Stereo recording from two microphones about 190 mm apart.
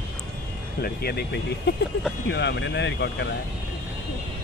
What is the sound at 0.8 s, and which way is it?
Speech, 55° left (ahead or behind).